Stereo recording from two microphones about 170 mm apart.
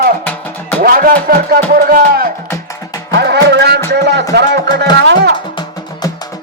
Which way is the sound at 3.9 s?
90° right.